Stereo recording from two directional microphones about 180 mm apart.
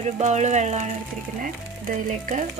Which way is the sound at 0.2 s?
40° right (ahead or behind).